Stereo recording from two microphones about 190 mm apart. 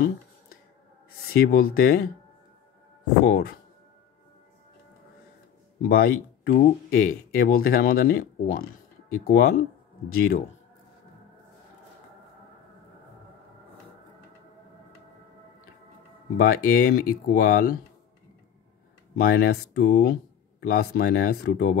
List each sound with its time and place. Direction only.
1.3 s speech: 50° left (ahead or behind)
3.3 s speech: 55° left (ahead or behind)
5.8 s speech: 50° left (ahead or behind)
16.3 s speech: 50° left (ahead or behind)
19.1 s speech: 55° left (ahead or behind)